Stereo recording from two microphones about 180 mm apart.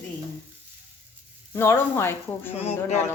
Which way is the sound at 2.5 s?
35° left (ahead or behind).